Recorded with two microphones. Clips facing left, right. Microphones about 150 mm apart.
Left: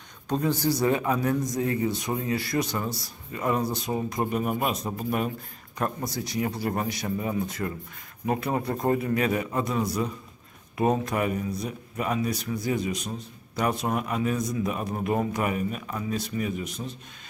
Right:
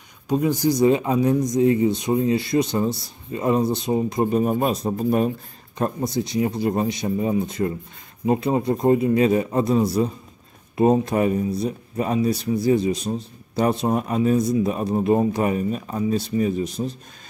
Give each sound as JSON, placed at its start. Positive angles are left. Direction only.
{"t": 0.3, "sound": "speech", "side_deg": -15}
{"t": 5.9, "sound": "speech", "side_deg": -25}